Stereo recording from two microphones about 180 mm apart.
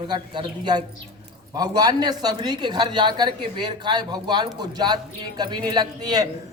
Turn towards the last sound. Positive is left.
turn(degrees=-20)  # may be behind; listen again after turning